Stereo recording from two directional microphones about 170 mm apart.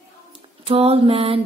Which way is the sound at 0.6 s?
35° right (ahead or behind).